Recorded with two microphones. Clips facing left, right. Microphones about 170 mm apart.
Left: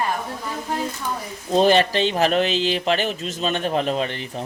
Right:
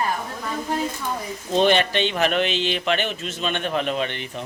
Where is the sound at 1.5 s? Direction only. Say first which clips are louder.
Left 2 dB; 35° left (ahead or behind).